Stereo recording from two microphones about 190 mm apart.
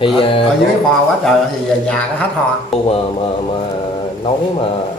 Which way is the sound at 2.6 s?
30° left (ahead or behind).